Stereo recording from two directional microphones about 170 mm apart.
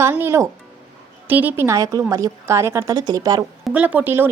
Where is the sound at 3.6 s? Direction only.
10° right (ahead or behind).